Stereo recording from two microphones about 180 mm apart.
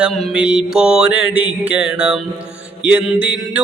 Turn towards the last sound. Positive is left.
turn(degrees=-5)  # may be behind; listen again after turning